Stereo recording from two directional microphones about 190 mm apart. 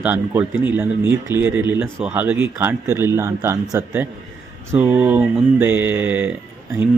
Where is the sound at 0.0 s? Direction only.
10° right (ahead or behind).